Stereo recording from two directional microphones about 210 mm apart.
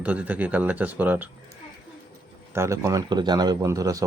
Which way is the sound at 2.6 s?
15° right (ahead or behind).